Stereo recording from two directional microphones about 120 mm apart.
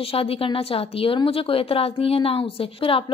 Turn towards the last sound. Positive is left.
turn(degrees=50)  # may be behind; listen again after turning